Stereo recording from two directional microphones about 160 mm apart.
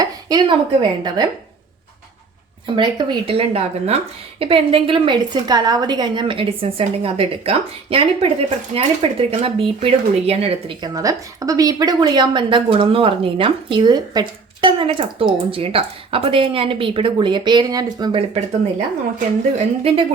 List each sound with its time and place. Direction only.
0.0 s speech: 25° right (ahead or behind)
2.7 s a woman's voice: 30° right (ahead or behind)
10.8 s a woman's voice: 25° right (ahead or behind)
19.5 s a woman's voice: 35° right (ahead or behind)